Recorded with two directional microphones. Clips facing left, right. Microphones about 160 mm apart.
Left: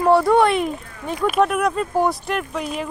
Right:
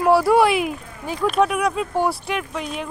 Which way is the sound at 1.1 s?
5° left (ahead or behind).